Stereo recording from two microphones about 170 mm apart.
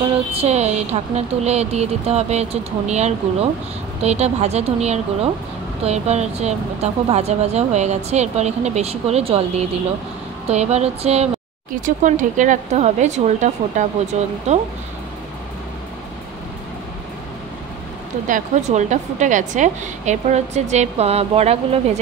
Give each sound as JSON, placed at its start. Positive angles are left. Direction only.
{"t": 0.3, "sound": "speech", "side_deg": -40}
{"t": 11.8, "sound": "a woman's voice", "side_deg": -50}
{"t": 18.2, "sound": "a woman's voice", "side_deg": -45}